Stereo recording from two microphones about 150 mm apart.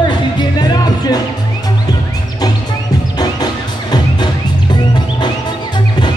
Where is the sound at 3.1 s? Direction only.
25° left (ahead or behind).